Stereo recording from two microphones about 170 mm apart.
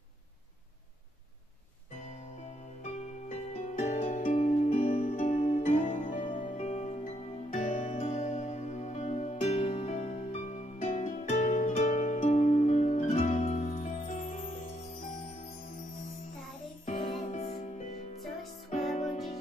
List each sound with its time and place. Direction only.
2.8 s music: 40° left (ahead or behind)
17.2 s music: 45° left (ahead or behind)